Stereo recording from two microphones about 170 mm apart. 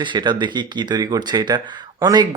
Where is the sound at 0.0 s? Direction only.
25° right (ahead or behind).